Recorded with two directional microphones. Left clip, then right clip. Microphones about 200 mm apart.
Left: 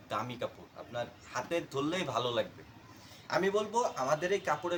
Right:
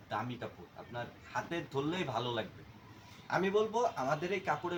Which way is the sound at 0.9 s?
25° left (ahead or behind).